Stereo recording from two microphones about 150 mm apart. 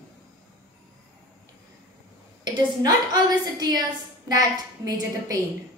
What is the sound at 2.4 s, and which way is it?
A woman's voice, 25° right (ahead or behind).